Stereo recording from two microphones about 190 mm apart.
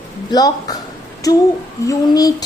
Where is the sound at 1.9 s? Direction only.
20° left (ahead or behind).